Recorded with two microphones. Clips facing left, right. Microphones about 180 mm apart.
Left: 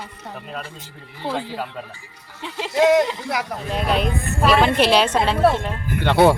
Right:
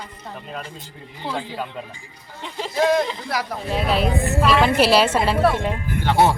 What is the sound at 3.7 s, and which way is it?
A woman's voice, 5° right (ahead or behind).